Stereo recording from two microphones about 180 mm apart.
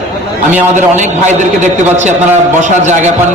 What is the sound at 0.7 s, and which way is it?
A man's voice, 45° right (ahead or behind).